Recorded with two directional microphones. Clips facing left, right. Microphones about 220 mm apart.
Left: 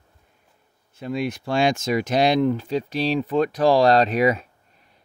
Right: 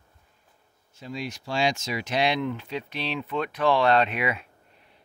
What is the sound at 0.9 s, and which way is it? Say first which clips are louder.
Speech: left 8 dB; 60° left (ahead or behind).